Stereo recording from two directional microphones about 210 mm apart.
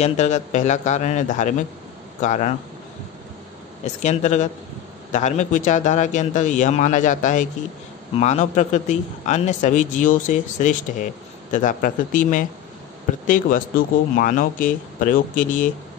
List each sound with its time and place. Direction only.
0.0 s a man's voice: 35° left (ahead or behind)
3.8 s a man's voice: 35° left (ahead or behind)